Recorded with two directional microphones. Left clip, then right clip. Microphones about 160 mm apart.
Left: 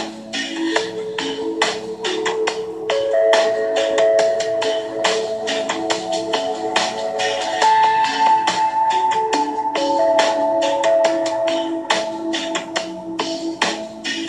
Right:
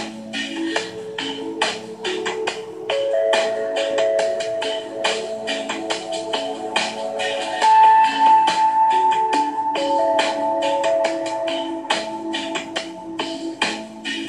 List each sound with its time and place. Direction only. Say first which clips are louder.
0.6 s music: left 6 dB; 35° right (ahead or behind)